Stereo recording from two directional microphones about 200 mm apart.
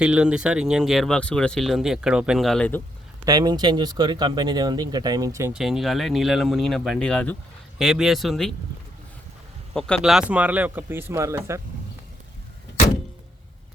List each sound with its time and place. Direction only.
0.0 s speech: 5° right (ahead or behind)
3.2 s speech: 20° right (ahead or behind)
5.5 s speech: centre (ahead or behind)
9.7 s speech: 5° left (ahead or behind); by 11.6 s 15° right (ahead or behind)